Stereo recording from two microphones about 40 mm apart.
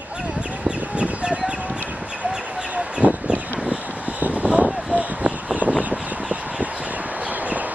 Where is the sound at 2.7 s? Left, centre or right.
Right.